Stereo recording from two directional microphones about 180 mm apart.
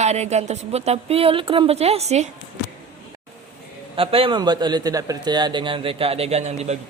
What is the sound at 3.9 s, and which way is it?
A man's voice, 30° right (ahead or behind).